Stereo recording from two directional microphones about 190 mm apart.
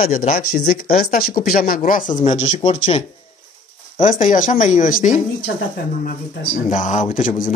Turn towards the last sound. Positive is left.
turn(degrees=40)  # may be behind; listen again after turning